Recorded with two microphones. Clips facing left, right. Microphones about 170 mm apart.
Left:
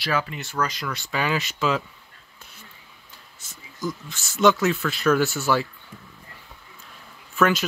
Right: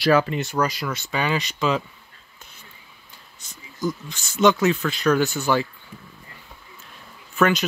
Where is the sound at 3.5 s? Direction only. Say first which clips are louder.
Right 4 dB; 5° left (ahead or behind).